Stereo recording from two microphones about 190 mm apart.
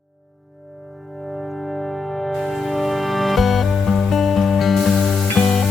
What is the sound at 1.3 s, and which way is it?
Music, centre (ahead or behind).